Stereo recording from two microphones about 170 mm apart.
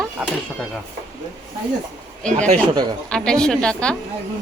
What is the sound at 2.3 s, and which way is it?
Speech, 40° right (ahead or behind).